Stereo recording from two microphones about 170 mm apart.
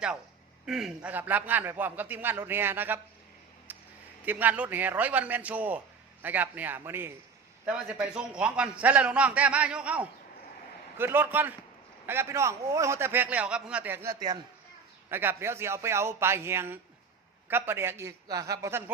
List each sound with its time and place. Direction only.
0.6 s a man's voice: 5° right (ahead or behind)
3.7 s a sound: 10° right (ahead or behind)
4.3 s a man's voice: 10° right (ahead or behind)